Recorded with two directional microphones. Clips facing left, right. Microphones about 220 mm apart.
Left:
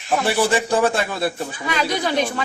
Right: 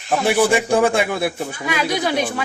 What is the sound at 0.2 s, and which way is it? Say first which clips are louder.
A man's voice: right 4 dB; 15° right (ahead or behind).